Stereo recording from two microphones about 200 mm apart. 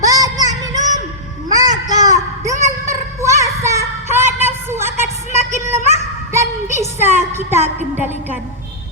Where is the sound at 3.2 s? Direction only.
15° right (ahead or behind).